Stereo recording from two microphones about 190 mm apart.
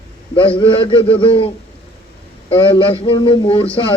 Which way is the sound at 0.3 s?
25° left (ahead or behind).